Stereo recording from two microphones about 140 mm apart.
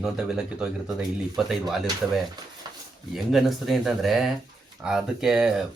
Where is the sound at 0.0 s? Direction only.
5° right (ahead or behind).